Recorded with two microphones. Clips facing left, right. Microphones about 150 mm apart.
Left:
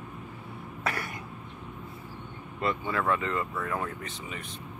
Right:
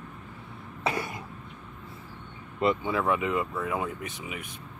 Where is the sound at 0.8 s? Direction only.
20° right (ahead or behind).